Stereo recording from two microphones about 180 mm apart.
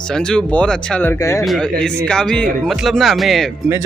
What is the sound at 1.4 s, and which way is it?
Speech, centre (ahead or behind).